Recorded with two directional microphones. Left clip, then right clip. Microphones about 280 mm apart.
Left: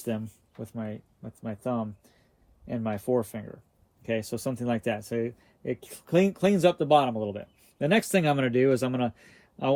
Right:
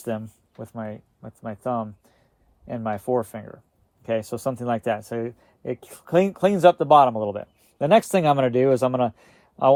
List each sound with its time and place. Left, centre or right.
0.0 s speech: centre